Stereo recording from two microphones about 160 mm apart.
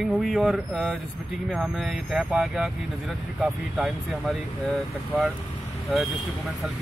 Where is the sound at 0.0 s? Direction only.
Centre (ahead or behind).